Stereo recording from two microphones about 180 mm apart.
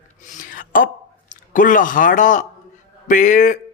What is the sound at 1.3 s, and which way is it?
Speech, 45° left (ahead or behind).